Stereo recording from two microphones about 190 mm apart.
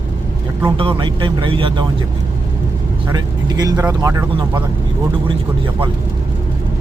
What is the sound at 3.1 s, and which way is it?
Speech, 20° right (ahead or behind).